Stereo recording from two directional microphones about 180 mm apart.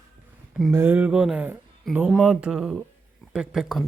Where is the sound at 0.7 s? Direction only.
10° right (ahead or behind).